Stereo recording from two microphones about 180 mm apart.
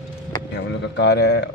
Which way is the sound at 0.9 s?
70° left (ahead or behind).